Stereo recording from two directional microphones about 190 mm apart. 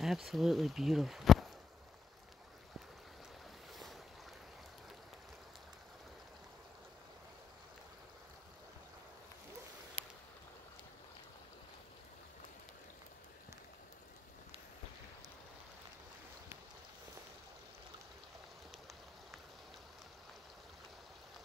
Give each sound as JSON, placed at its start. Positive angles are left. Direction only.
{"t": 0.0, "sound": "speech", "side_deg": 0}
{"t": 3.7, "sound": "boat", "side_deg": 0}
{"t": 10.0, "sound": "boat", "side_deg": -30}